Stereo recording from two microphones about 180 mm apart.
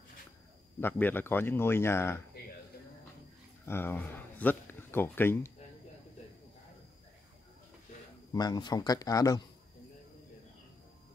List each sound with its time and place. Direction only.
0.7 s speech: 10° left (ahead or behind)
3.6 s speech: 10° left (ahead or behind)
8.3 s speech: 20° left (ahead or behind)